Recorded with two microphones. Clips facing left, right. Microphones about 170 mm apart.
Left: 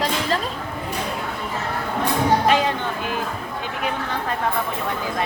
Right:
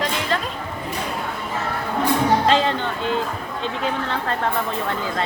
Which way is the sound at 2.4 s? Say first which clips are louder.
Right 1 dB; 15° left (ahead or behind).